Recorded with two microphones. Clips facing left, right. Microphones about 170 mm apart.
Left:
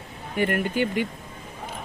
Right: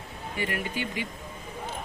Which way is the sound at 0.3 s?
55° left (ahead or behind).